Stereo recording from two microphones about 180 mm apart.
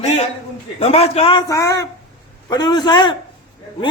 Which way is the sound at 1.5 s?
20° left (ahead or behind).